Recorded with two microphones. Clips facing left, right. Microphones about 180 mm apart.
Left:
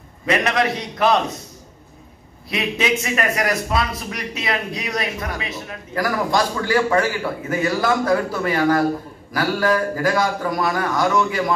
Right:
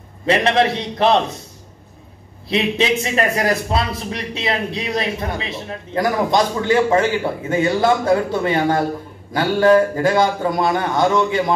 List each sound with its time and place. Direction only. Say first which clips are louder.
0.3 s speech: right 4 dB; 30° right (ahead or behind)
2.5 s speech: right 4 dB; 30° right (ahead or behind)